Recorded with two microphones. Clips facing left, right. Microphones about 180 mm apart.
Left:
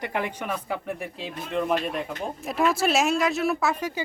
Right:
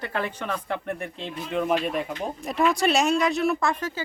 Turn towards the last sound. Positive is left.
turn(degrees=10)  # may be behind; listen again after turning